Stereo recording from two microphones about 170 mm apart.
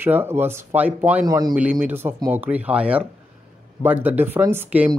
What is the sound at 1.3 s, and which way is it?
Speech, 20° right (ahead or behind).